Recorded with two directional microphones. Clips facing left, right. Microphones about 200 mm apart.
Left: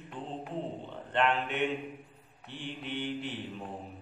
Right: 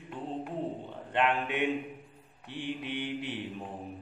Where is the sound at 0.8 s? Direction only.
15° right (ahead or behind).